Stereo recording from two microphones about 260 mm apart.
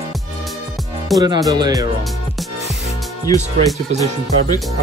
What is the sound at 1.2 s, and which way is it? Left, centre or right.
Speech, centre.